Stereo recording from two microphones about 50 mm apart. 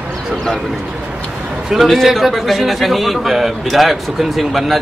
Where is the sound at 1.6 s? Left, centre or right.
Centre.